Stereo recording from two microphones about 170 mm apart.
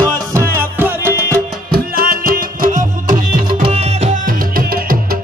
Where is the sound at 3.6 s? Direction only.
40° right (ahead or behind).